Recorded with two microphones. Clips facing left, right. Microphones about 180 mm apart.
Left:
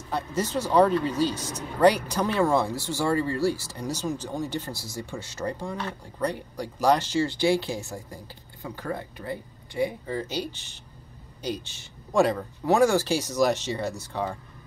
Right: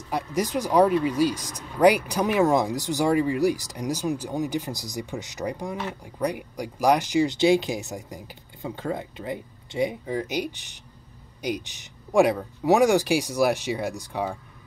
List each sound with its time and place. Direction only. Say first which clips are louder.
0.1 s speech: right 2 dB; 15° right (ahead or behind)